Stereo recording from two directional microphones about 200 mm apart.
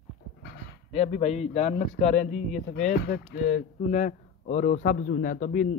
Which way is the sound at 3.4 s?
35° left (ahead or behind).